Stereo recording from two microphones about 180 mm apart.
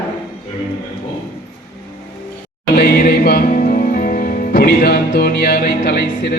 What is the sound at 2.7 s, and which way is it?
Speech, 55° left (ahead or behind).